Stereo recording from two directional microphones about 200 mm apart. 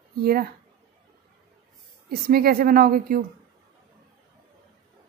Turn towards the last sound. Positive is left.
turn(degrees=-45)  # may be behind; listen again after turning